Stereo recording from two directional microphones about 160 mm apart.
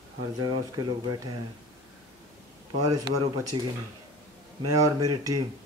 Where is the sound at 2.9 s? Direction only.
20° right (ahead or behind).